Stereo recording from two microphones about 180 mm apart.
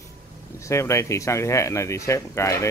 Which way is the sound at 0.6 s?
15° left (ahead or behind).